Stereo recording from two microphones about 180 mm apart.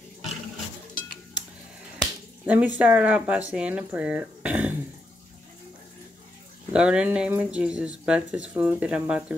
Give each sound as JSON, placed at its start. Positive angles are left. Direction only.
{"t": 2.4, "sound": "speech", "side_deg": -10}
{"t": 6.7, "sound": "speech", "side_deg": -5}